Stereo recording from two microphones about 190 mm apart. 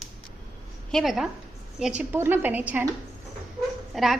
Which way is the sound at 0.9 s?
Centre (ahead or behind).